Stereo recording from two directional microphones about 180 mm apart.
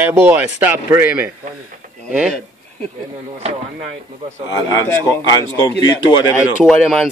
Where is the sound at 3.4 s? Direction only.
40° right (ahead or behind).